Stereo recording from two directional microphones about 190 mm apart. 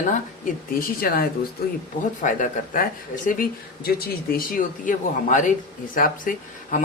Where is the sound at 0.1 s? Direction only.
45° left (ahead or behind).